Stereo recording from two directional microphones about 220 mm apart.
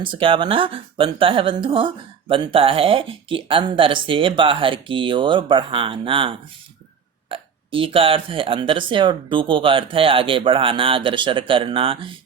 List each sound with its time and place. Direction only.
0.0 s speech: 25° right (ahead or behind)